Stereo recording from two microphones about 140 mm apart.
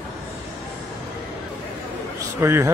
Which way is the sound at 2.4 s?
20° right (ahead or behind).